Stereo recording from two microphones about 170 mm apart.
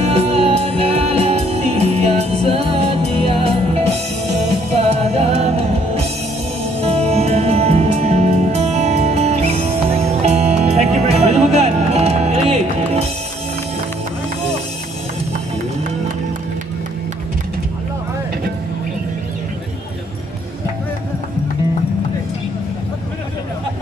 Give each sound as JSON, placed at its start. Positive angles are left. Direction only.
{"t": 0.0, "sound": "music", "side_deg": -35}
{"t": 5.1, "sound": "music", "side_deg": -35}
{"t": 6.8, "sound": "music", "side_deg": -40}